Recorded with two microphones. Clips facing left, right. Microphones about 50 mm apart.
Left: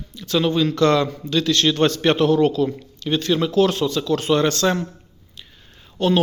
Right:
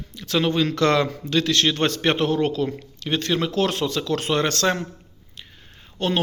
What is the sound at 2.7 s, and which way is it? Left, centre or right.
A man's voice, right.